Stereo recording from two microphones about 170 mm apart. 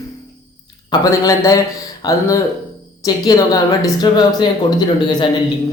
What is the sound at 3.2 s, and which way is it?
A woman's voice, 20° left (ahead or behind).